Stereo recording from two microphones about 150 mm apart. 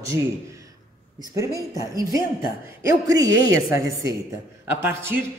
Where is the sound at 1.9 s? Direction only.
20° right (ahead or behind).